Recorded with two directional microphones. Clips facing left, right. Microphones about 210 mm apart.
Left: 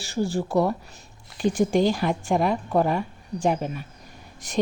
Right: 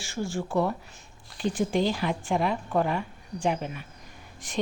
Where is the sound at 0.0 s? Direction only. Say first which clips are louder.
Left 5 dB; 35° left (ahead or behind).